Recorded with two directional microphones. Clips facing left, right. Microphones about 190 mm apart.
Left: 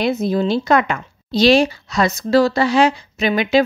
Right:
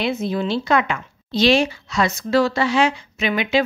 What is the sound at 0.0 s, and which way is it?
A woman's voice, 40° left (ahead or behind).